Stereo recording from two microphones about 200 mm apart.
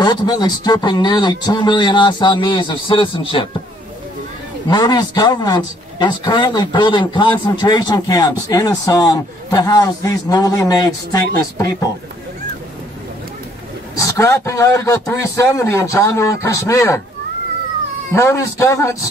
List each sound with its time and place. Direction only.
0.0 s speech: 20° left (ahead or behind)
4.6 s a man's voice: 20° left (ahead or behind)
13.9 s a man's voice: 15° left (ahead or behind)
18.1 s a man's voice: 15° left (ahead or behind)